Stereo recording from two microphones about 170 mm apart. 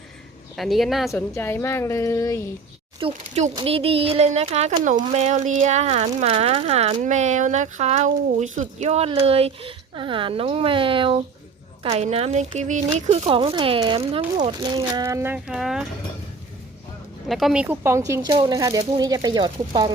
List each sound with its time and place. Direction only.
0.5 s speech: centre (ahead or behind)
1.1 s a woman's voice: 15° left (ahead or behind)
3.0 s speech: 40° right (ahead or behind); by 15.9 s 5° right (ahead or behind)
17.2 s speech: centre (ahead or behind); by 19.9 s 25° right (ahead or behind)